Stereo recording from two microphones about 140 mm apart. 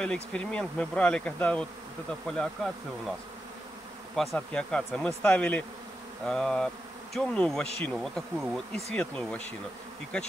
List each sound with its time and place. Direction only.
0.0 s speech: 5° left (ahead or behind)
4.1 s speech: centre (ahead or behind)